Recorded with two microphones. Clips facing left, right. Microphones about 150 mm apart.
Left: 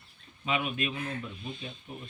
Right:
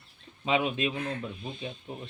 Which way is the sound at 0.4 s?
25° right (ahead or behind).